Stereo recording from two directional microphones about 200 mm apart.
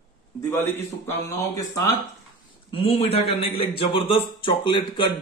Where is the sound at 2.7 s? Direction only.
30° left (ahead or behind).